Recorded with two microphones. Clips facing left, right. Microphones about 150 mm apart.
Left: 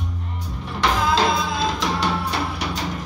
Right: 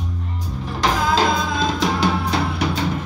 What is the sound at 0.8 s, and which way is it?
Music, 40° right (ahead or behind).